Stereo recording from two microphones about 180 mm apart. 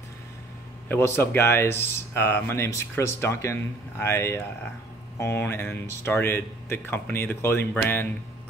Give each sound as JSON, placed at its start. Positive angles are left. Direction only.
{"t": 0.8, "sound": "speech", "side_deg": 15}